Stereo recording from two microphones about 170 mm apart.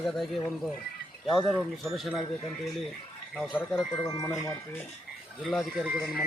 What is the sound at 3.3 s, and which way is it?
Speech, centre (ahead or behind).